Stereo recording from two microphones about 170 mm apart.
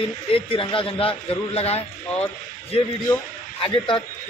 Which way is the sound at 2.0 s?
10° left (ahead or behind).